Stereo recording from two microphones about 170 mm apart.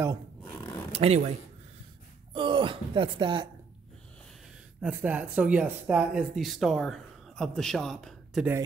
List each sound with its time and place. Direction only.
0.4 s roaring cats: 20° left (ahead or behind)
0.9 s speech: 40° right (ahead or behind)
2.3 s speech: 30° right (ahead or behind)
4.8 s speech: 10° right (ahead or behind)